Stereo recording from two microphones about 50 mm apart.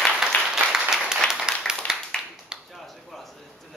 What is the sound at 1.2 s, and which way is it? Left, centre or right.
Clapping, centre.